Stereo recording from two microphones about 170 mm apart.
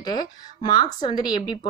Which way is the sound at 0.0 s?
25° left (ahead or behind).